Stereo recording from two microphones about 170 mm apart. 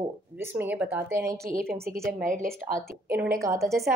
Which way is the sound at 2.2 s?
55° right (ahead or behind).